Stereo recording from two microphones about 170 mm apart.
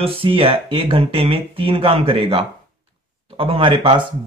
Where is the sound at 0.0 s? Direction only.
30° right (ahead or behind).